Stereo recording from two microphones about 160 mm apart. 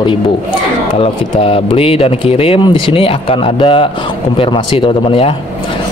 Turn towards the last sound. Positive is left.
turn(degrees=35)  # may be behind; listen again after turning